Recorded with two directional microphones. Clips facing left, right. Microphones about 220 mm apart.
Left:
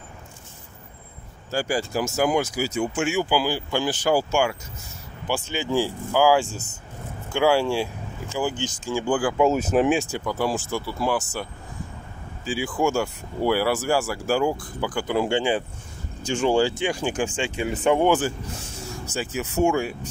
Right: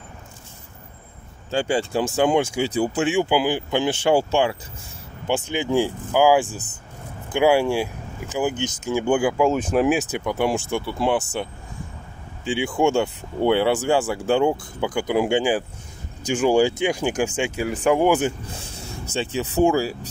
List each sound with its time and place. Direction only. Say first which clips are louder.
1.5 s speech: right 3 dB; 25° right (ahead or behind)
5.2 s speech: right 4 dB; 20° right (ahead or behind)
9.4 s speech: even; 5° left (ahead or behind)
10.0 s speech: right 3 dB; 20° right (ahead or behind)
12.6 s speech: right 3 dB; 30° right (ahead or behind); by 18.2 s 5° right (ahead or behind)
19.1 s speech: right 3 dB; 30° right (ahead or behind)